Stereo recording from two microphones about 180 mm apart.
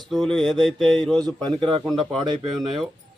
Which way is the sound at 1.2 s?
25° right (ahead or behind).